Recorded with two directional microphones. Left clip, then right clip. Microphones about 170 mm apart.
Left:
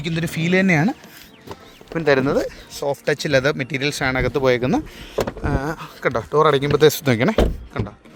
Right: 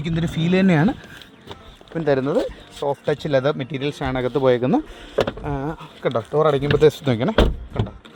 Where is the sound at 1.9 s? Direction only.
15° left (ahead or behind).